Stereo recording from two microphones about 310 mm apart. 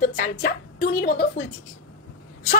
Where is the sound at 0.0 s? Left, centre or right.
Left.